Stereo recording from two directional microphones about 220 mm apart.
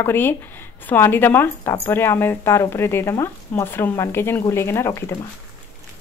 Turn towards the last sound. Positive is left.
turn(degrees=10)  # may be behind; listen again after turning